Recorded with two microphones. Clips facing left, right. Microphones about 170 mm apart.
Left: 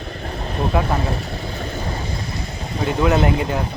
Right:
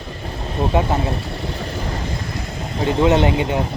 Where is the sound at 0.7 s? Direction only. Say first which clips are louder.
Right 2 dB; 25° right (ahead or behind).